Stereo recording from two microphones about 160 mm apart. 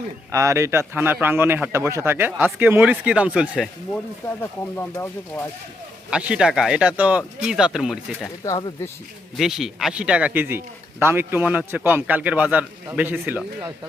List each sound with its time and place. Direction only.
0.3 s a man's voice: 20° right (ahead or behind)
3.9 s speech: 10° left (ahead or behind)
6.1 s speech: 5° right (ahead or behind)
8.4 s speech: 20° left (ahead or behind)
9.4 s a man's voice: centre (ahead or behind)